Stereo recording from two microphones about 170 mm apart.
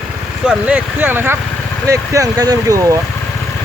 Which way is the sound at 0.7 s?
10° right (ahead or behind).